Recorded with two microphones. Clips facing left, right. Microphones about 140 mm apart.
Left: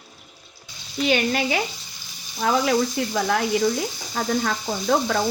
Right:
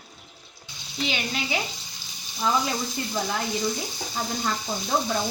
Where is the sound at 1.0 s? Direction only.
55° left (ahead or behind).